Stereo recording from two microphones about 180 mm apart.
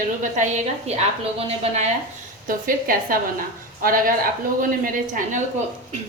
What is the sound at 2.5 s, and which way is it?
A woman's voice, 50° right (ahead or behind).